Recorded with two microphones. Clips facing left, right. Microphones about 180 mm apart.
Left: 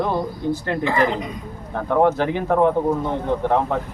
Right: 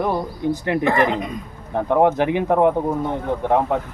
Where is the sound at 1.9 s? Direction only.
15° right (ahead or behind).